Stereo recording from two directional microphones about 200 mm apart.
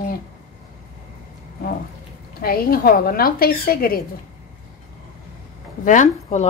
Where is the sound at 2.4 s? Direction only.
50° left (ahead or behind).